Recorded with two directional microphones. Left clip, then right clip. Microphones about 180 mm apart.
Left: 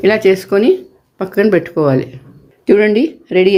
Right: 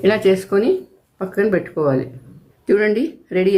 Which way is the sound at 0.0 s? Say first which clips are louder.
Left 4 dB; 40° left (ahead or behind).